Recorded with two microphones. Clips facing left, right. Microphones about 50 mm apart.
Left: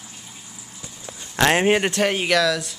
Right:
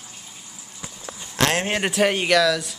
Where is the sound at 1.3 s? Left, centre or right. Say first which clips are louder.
Left 5 dB; left.